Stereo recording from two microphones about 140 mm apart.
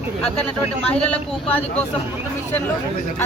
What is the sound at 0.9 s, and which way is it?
Speech, 10° left (ahead or behind).